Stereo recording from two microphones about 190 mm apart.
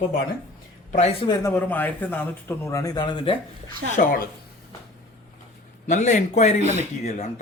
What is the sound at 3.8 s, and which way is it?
Speech, 60° right (ahead or behind).